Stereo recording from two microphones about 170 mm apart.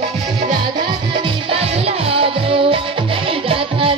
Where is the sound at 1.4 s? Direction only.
35° right (ahead or behind).